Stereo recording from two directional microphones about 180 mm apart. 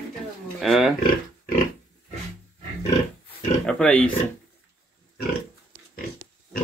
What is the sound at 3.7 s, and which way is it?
Speech, 5° left (ahead or behind).